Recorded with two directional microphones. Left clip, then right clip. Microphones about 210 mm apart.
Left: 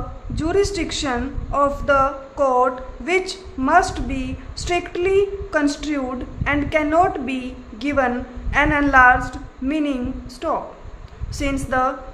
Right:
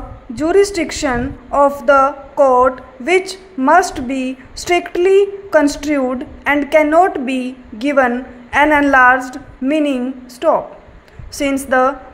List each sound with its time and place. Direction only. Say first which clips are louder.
0.3 s a woman's voice: right 7 dB; 20° right (ahead or behind)